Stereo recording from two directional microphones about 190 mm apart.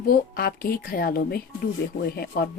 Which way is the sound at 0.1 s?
50° left (ahead or behind).